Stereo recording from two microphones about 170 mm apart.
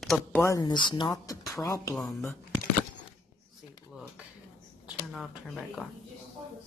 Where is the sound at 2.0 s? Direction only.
Centre (ahead or behind).